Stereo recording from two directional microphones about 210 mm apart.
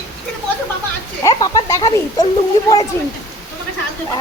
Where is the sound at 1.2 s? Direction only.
20° left (ahead or behind).